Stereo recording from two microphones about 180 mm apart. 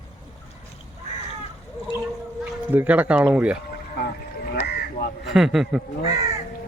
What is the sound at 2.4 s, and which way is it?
Speech, 10° right (ahead or behind).